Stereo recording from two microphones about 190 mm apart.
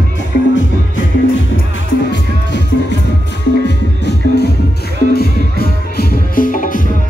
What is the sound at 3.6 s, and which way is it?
Music, 60° left (ahead or behind).